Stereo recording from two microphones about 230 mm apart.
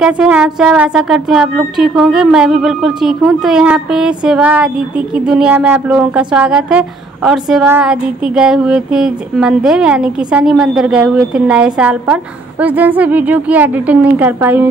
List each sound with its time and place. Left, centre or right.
0.0 s speech: centre